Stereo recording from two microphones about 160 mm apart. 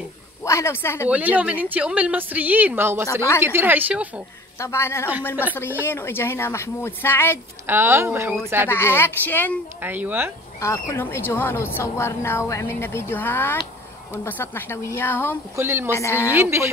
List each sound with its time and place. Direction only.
0.5 s a woman's voice: 15° left (ahead or behind)
1.1 s speech: 10° right (ahead or behind)
3.1 s a woman's voice: 20° left (ahead or behind)
3.4 s speech: 15° right (ahead or behind)
4.6 s a woman's voice: 15° left (ahead or behind)
7.6 s speech: 15° right (ahead or behind)
8.6 s a woman's voice: 15° left (ahead or behind)
9.8 s speech: 10° right (ahead or behind)
10.6 s a woman's voice: 15° left (ahead or behind)
15.5 s speech: 15° right (ahead or behind)
15.9 s a woman's voice: 15° left (ahead or behind)
16.3 s speech: 15° right (ahead or behind)